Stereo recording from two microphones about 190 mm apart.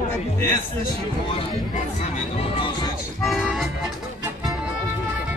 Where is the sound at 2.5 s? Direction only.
25° left (ahead or behind).